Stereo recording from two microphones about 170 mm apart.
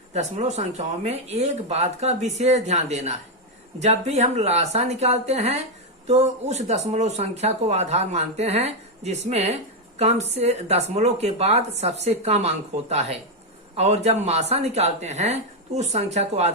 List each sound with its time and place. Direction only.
0.1 s speech: 40° right (ahead or behind)